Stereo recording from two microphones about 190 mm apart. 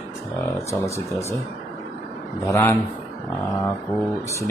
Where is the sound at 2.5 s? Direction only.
15° left (ahead or behind).